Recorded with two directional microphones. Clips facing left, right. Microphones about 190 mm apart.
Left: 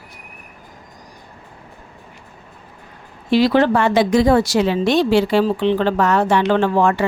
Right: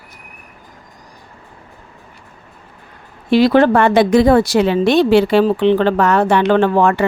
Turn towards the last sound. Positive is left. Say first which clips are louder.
# right 3 dB
turn(degrees=-60)  # may be behind; listen again after turning